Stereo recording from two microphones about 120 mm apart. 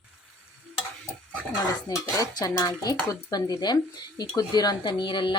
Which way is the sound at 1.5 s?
30° left (ahead or behind).